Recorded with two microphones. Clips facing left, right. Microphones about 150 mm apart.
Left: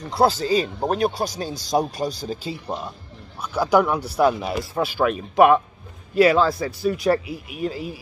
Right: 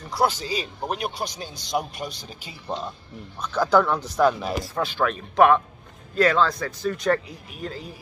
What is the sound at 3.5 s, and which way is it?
Speech, 10° left (ahead or behind).